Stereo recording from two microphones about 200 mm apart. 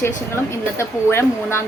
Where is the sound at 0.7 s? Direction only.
15° left (ahead or behind).